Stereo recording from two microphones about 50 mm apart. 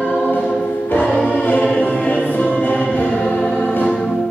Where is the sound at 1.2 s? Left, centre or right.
Left.